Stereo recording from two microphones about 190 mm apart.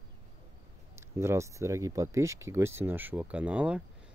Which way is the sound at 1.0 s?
15° right (ahead or behind).